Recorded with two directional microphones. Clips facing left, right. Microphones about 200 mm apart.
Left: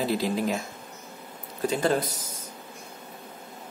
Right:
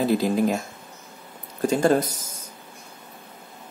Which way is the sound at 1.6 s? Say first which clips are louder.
Right 5 dB; 45° right (ahead or behind).